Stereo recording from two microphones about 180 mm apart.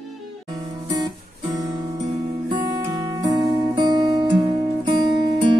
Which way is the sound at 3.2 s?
25° right (ahead or behind).